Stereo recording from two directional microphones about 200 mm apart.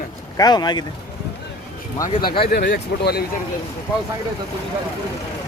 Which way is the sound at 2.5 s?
45° left (ahead or behind).